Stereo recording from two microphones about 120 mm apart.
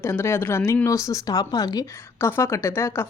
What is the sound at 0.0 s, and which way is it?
Speech, 20° left (ahead or behind).